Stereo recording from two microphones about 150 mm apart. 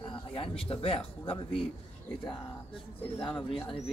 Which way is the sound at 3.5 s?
40° left (ahead or behind).